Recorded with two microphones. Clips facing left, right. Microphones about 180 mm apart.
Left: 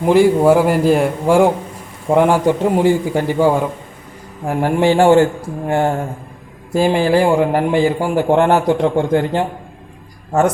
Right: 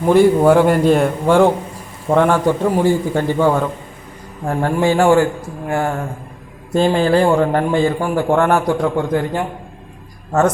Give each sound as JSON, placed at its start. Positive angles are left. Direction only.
{"t": 0.0, "sound": "a man's voice", "side_deg": 10}
{"t": 6.7, "sound": "a man's voice", "side_deg": 10}